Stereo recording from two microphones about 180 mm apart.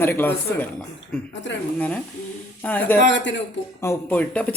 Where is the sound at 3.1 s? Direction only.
85° left.